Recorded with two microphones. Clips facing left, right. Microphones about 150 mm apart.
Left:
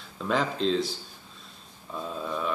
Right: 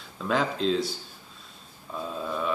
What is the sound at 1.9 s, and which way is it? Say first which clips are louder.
Speech: right 1 dB; centre (ahead or behind).